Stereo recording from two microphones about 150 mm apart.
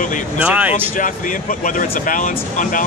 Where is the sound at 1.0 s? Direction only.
60° left (ahead or behind).